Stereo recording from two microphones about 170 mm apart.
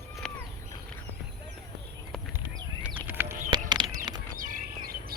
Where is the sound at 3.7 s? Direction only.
25° right (ahead or behind).